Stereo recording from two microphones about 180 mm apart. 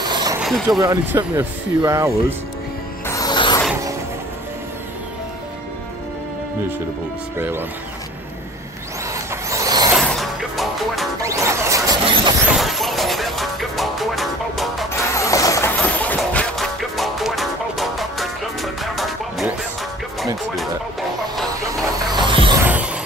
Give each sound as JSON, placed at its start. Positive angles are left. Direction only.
{"t": 0.0, "sound": "vehicle", "side_deg": -20}
{"t": 0.4, "sound": "speech", "side_deg": 0}
{"t": 0.7, "sound": "speech", "side_deg": -20}
{"t": 3.1, "sound": "music", "side_deg": 20}
{"t": 7.3, "sound": "speech", "side_deg": -10}
{"t": 9.1, "sound": "vehicle", "side_deg": -15}
{"t": 9.9, "sound": "music", "side_deg": 0}
{"t": 11.2, "sound": "music", "side_deg": -15}
{"t": 12.1, "sound": "a sound", "side_deg": -30}
{"t": 12.4, "sound": "music", "side_deg": 0}
{"t": 15.1, "sound": "music", "side_deg": 15}
{"t": 22.1, "sound": "a sound", "side_deg": -25}